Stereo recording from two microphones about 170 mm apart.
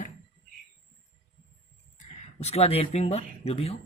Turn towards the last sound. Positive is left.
turn(degrees=35)  # may be behind; listen again after turning